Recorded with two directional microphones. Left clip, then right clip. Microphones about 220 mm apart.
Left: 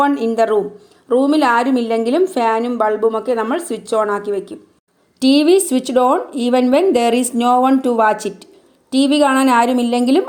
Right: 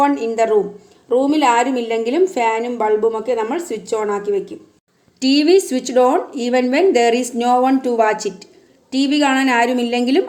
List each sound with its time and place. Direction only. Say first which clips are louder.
0.0 s a woman's voice: left 1 dB; 30° left (ahead or behind)